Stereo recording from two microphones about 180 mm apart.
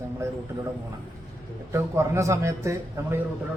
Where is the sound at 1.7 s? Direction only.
15° right (ahead or behind).